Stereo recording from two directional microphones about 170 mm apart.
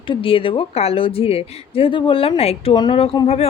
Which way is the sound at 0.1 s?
30° left (ahead or behind).